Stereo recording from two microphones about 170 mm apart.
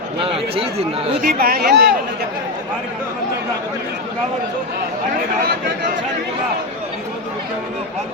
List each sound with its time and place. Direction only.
0.2 s speech: 35° right (ahead or behind)
1.2 s speech: 60° right (ahead or behind)